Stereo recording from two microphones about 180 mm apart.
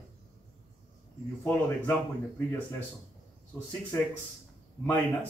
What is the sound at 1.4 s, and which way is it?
Speech, 10° left (ahead or behind).